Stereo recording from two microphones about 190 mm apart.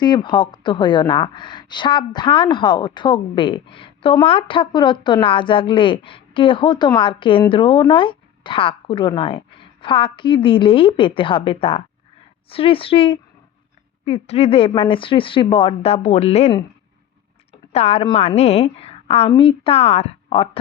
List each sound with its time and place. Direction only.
0.0 s a woman's voice: 25° left (ahead or behind)
17.7 s a woman's voice: 35° left (ahead or behind)